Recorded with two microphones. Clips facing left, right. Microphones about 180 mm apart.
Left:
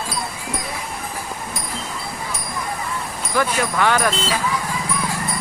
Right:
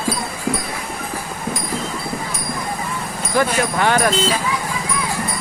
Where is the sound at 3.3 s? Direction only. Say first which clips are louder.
Right 2 dB; 40° right (ahead or behind).